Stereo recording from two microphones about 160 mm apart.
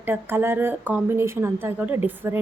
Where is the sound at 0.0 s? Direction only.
15° right (ahead or behind).